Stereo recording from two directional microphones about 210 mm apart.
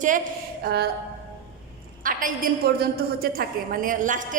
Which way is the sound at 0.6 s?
50° right (ahead or behind).